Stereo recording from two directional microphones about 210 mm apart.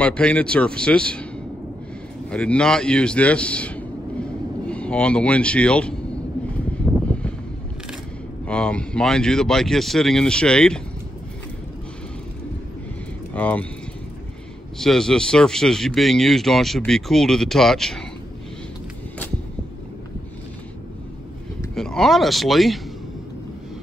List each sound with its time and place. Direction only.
0.0 s speech: 5° left (ahead or behind)
2.2 s a man's voice: 5° left (ahead or behind)
6.9 s a sound: 5° right (ahead or behind)
8.5 s speech: 5° left (ahead or behind)
13.3 s speech: 5° left (ahead or behind)
14.8 s speech: centre (ahead or behind)
21.7 s speech: centre (ahead or behind)